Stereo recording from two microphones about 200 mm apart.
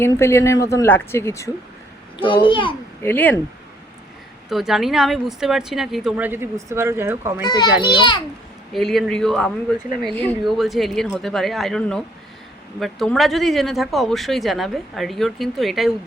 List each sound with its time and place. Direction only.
0.0 s speech: 15° left (ahead or behind)
2.2 s a child's voice: 25° left (ahead or behind)
3.0 s speech: 10° left (ahead or behind)
4.4 s speech: centre (ahead or behind)
7.4 s a child's voice: 20° left (ahead or behind)
8.7 s speech: centre (ahead or behind)